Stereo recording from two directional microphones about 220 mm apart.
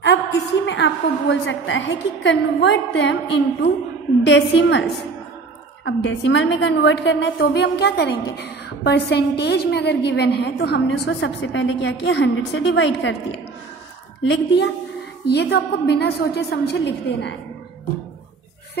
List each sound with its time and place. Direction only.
0.7 s a woman's voice: 55° left (ahead or behind)
5.9 s a woman's voice: 55° left (ahead or behind)